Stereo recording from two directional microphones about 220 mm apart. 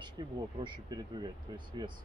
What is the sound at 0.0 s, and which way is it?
Speech, 20° right (ahead or behind).